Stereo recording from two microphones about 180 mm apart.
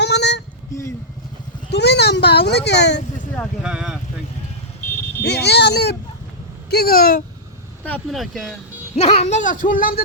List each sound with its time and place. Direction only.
0.0 s a sound: 70° left (ahead or behind)
1.7 s a sound: 70° left (ahead or behind)
3.6 s speech: 5° right (ahead or behind)
5.2 s a child's voice: 65° left (ahead or behind)
7.9 s speech: 5° left (ahead or behind)
9.0 s speech: 35° left (ahead or behind); by 10.0 s 50° left (ahead or behind)